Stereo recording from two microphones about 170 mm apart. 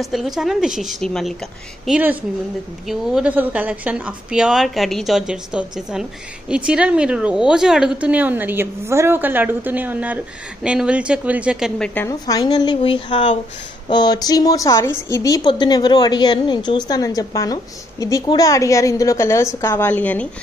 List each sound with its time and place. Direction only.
0.0 s a woman's voice: centre (ahead or behind)
11.8 s a woman's voice: 10° left (ahead or behind)
12.3 s a woman's voice: 25° left (ahead or behind)